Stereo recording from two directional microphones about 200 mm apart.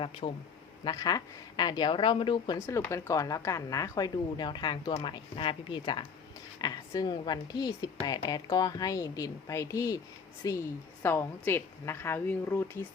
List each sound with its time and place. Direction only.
0.0 s a woman's voice: 30° left (ahead or behind)
0.9 s a woman's voice: 20° left (ahead or behind)